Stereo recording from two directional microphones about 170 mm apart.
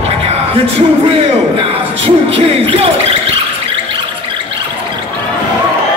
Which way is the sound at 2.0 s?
30° right (ahead or behind).